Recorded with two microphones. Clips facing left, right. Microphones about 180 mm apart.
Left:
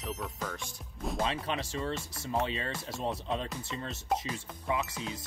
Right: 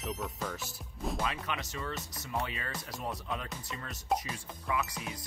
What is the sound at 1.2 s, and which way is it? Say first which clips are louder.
Speech: left 7 dB; 30° left (ahead or behind).